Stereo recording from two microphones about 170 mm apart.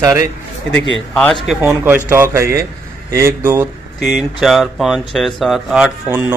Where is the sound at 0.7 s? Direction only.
90° left.